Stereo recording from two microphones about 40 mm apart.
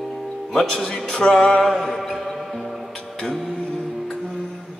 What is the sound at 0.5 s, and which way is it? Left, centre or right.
Speech, centre.